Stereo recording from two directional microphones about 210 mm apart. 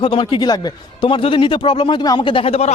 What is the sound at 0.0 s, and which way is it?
Speech, 25° left (ahead or behind).